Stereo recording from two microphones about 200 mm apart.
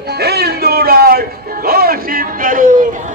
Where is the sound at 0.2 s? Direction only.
55° right (ahead or behind).